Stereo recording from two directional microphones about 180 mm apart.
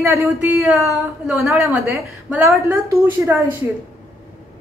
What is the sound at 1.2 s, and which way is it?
A woman's voice, centre (ahead or behind).